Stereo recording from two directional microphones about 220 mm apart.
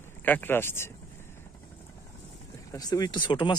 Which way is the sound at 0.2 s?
10° left (ahead or behind).